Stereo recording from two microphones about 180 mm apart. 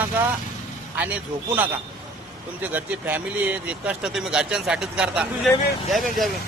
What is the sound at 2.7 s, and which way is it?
Speech, 10° right (ahead or behind).